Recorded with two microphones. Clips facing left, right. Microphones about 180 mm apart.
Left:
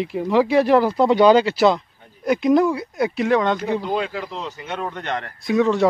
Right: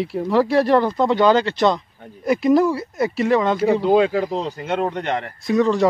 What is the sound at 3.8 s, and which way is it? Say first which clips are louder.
Speech: right 8 dB; 40° right (ahead or behind).